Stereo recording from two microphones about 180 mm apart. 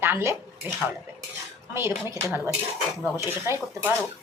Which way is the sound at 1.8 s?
15° right (ahead or behind).